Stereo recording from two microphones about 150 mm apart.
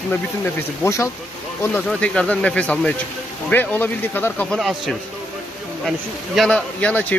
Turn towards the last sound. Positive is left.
turn(degrees=10)  # may be behind; listen again after turning